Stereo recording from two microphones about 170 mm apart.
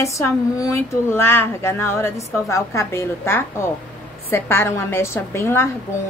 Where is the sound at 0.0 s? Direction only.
20° left (ahead or behind).